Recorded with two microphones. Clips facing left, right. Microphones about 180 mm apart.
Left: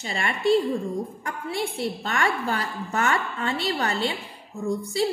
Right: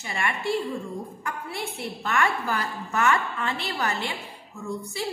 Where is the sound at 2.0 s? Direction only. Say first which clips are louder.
Right 2 dB; 30° left (ahead or behind).